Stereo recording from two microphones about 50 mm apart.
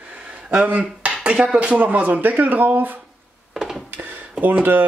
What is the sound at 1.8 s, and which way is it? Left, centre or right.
Speech, right.